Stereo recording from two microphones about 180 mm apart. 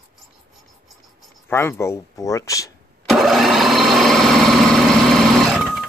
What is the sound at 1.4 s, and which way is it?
Speech, 15° left (ahead or behind).